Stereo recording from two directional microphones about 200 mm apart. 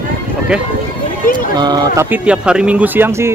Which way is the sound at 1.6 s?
20° right (ahead or behind).